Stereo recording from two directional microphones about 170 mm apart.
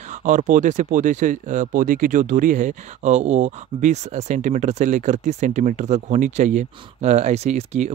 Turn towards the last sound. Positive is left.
turn(degrees=-40)  # may be behind; listen again after turning